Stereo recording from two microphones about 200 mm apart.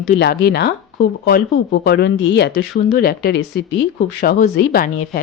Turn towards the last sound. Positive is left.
turn(degrees=45)  # may be behind; listen again after turning